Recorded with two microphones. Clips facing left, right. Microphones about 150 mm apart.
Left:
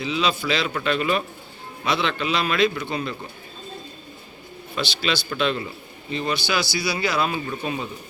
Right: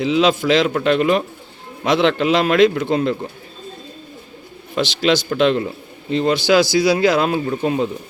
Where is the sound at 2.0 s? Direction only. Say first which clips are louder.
Right 11 dB; 85° right.